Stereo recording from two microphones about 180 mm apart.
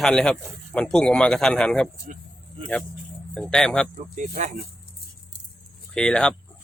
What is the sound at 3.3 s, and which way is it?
Speech, centre (ahead or behind).